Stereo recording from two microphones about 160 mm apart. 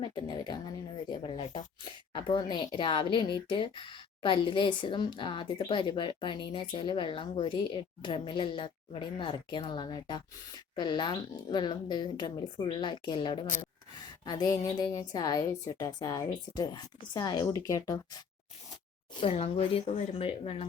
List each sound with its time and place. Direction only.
0.0 s a woman's voice: 30° left (ahead or behind)
19.2 s a woman's voice: 40° left (ahead or behind)